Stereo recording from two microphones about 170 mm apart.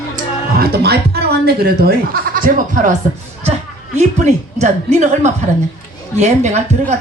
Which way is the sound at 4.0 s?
45° right (ahead or behind).